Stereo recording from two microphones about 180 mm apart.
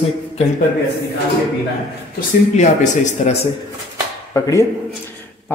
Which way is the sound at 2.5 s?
40° left (ahead or behind).